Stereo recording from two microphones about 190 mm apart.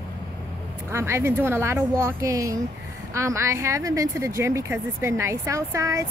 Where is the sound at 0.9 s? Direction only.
15° right (ahead or behind).